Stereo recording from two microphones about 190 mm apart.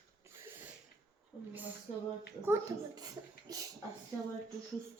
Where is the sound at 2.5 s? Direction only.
20° right (ahead or behind).